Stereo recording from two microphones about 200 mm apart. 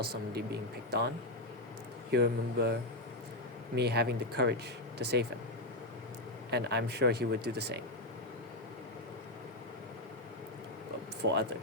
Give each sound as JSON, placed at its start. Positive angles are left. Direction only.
{"t": 0.3, "sound": "speech", "side_deg": -55}
{"t": 2.1, "sound": "speech", "side_deg": -60}
{"t": 3.8, "sound": "speech", "side_deg": -55}
{"t": 6.5, "sound": "speech", "side_deg": -55}
{"t": 11.2, "sound": "speech", "side_deg": -65}